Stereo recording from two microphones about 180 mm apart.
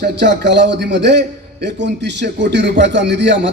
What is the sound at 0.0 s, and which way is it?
A man's voice, 70° right (ahead or behind).